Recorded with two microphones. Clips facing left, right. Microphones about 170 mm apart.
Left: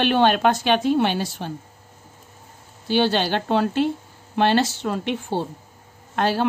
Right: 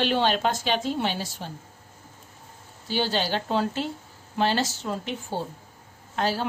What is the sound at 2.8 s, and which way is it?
A woman's voice, 65° left (ahead or behind).